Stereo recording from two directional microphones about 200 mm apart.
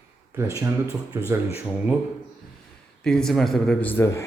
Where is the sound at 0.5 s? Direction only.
15° right (ahead or behind).